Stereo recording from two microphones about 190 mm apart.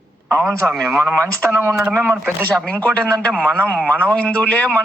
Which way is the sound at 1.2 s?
15° right (ahead or behind).